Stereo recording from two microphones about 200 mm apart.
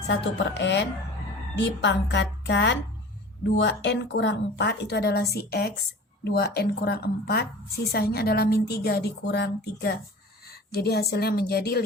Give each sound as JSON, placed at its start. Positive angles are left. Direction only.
{"t": 0.1, "sound": "a woman's voice", "side_deg": 60}